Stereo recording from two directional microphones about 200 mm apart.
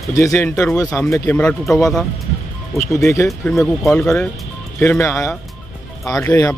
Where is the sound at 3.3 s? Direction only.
Centre (ahead or behind).